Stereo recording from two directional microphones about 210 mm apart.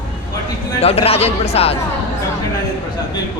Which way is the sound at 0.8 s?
30° left (ahead or behind).